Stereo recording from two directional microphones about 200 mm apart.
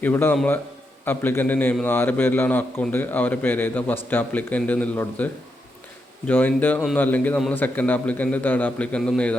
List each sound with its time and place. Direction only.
0.0 s a man's voice: 10° left (ahead or behind)